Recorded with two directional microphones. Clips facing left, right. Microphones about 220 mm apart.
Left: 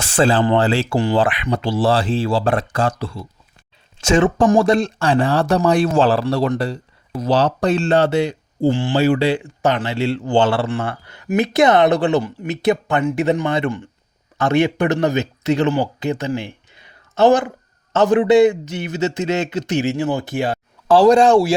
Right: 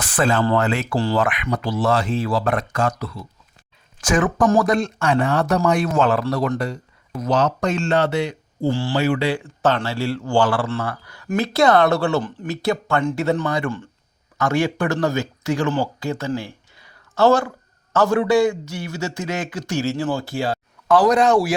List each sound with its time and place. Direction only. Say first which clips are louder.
0.0 s speech: left 3 dB; 30° left (ahead or behind)
8.7 s speech: left 3 dB; 20° left (ahead or behind)
9.0 s a man's voice: left 5 dB; 30° left (ahead or behind)
9.4 s a man's voice: left 1 dB; 15° left (ahead or behind)